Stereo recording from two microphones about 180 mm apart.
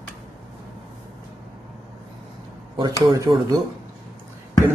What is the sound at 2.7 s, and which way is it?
Speech, 20° right (ahead or behind).